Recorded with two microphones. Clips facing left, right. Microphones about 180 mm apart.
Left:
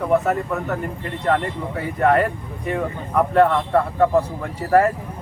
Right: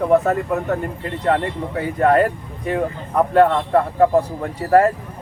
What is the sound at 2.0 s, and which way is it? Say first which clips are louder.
Speech: right 2 dB; 40° right (ahead or behind).